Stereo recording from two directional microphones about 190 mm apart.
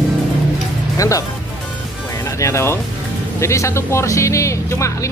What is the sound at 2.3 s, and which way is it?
Speech, 15° left (ahead or behind).